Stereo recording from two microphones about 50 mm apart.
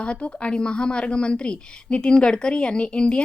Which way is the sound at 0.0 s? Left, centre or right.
Left.